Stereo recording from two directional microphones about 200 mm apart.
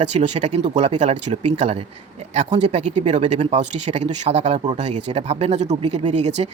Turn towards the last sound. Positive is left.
turn(degrees=-35)  # may be behind; listen again after turning